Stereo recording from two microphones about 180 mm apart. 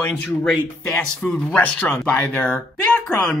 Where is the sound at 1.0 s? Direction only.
10° left (ahead or behind).